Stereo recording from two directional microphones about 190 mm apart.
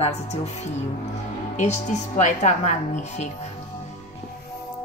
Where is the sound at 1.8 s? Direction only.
40° left (ahead or behind).